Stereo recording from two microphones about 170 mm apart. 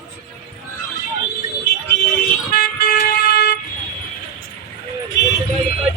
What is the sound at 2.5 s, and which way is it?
Vehicle, 60° left (ahead or behind).